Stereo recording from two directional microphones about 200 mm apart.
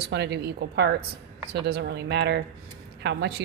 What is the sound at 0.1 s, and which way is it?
A woman's voice, 60° right (ahead or behind).